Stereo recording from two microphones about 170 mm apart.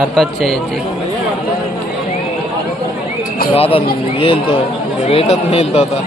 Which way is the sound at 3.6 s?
35° left (ahead or behind).